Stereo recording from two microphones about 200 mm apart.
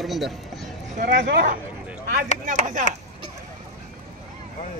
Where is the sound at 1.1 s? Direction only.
65° right (ahead or behind).